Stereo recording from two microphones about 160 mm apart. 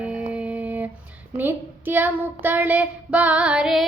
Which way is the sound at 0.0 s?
10° right (ahead or behind).